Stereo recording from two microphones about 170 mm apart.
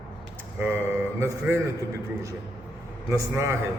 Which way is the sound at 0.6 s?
15° right (ahead or behind).